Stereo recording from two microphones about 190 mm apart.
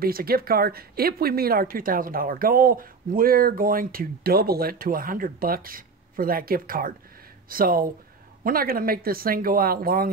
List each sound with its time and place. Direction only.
0.0 s speech: 50° right (ahead or behind)